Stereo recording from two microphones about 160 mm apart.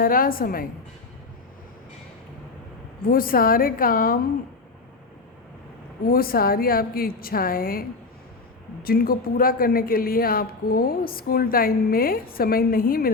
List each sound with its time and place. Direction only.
0.0 s a woman's voice: 60° left (ahead or behind)
3.1 s a woman's voice: 65° left (ahead or behind)
6.1 s speech: 70° left (ahead or behind)